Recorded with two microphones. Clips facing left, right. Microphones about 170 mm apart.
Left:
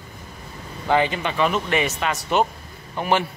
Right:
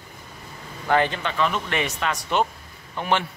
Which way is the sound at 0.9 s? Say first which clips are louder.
Left 1 dB; 15° left (ahead or behind).